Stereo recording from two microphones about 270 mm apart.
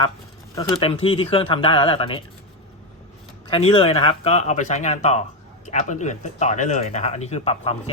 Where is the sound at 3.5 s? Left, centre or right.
Left.